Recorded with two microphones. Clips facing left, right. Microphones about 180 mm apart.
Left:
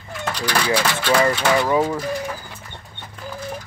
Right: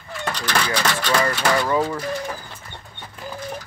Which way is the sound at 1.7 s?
15° left (ahead or behind).